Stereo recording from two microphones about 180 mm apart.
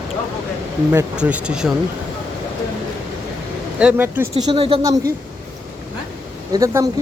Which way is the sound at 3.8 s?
10° right (ahead or behind).